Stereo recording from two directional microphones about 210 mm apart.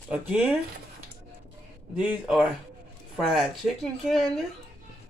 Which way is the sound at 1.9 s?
5° right (ahead or behind).